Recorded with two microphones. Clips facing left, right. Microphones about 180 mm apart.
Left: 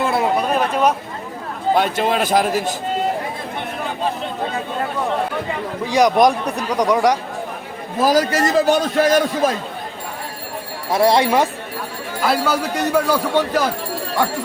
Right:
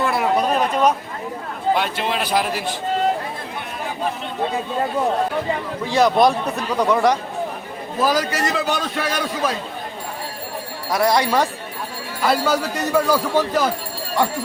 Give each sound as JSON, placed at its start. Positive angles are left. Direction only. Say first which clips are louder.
{"t": 0.0, "sound": "a sound", "louder": "left 2 dB", "side_deg": 25}
{"t": 0.3, "sound": "a sound", "louder": "even", "side_deg": 5}
{"t": 1.7, "sound": "a man's voice", "louder": "left 5 dB", "side_deg": 45}
{"t": 5.9, "sound": "speech", "louder": "left 1 dB", "side_deg": 15}
{"t": 8.0, "sound": "a man's voice", "louder": "left 4 dB", "side_deg": 40}
{"t": 10.9, "sound": "speech", "louder": "left 3 dB", "side_deg": 25}
{"t": 12.2, "sound": "speech", "louder": "even", "side_deg": 5}